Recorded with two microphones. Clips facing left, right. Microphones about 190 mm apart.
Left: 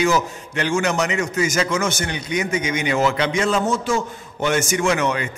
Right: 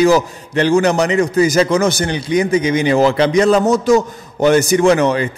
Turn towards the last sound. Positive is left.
turn(degrees=-35)  # may be behind; listen again after turning